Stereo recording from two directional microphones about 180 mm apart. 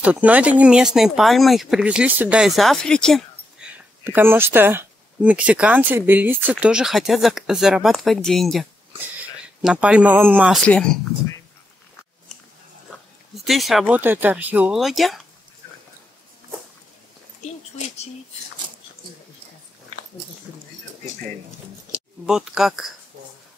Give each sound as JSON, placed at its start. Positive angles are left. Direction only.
{"t": 0.0, "sound": "speech", "side_deg": -10}
{"t": 10.6, "sound": "speech", "side_deg": 5}
{"t": 13.4, "sound": "speech", "side_deg": 0}
{"t": 17.4, "sound": "a sound", "side_deg": 40}
{"t": 22.2, "sound": "speech", "side_deg": -5}